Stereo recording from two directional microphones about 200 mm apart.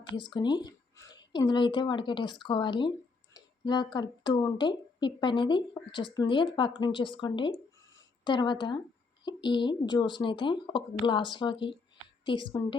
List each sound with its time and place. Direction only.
0.3 s a woman's voice: 20° left (ahead or behind)